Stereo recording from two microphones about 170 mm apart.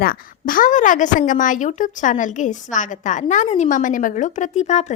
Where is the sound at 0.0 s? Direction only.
60° left (ahead or behind).